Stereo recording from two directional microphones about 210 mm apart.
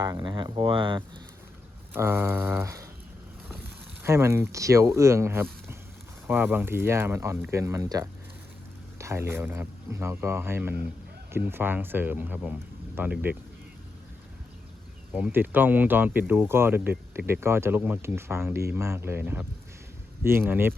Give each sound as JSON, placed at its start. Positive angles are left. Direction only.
{"t": 0.0, "sound": "speech", "side_deg": -20}
{"t": 1.9, "sound": "speech", "side_deg": -10}
{"t": 4.0, "sound": "speech", "side_deg": -15}
{"t": 15.1, "sound": "speech", "side_deg": -10}